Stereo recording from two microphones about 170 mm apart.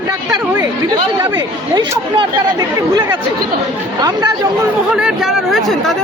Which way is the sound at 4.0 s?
25° right (ahead or behind).